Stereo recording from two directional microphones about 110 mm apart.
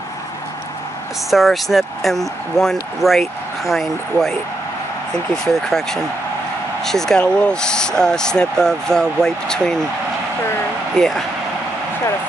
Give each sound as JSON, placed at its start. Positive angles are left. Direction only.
{"t": 1.3, "sound": "speech", "side_deg": 0}
{"t": 11.0, "sound": "speech", "side_deg": 0}